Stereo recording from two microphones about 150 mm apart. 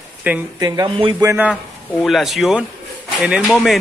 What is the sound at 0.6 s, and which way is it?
Speech, 25° right (ahead or behind).